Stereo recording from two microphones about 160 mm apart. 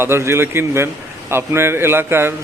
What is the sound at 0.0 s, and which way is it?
Speech, 15° right (ahead or behind).